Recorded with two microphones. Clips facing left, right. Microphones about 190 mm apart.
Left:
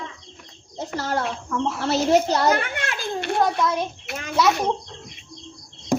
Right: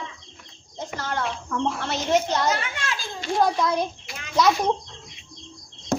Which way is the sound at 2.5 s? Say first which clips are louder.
Left 4 dB; 55° left (ahead or behind).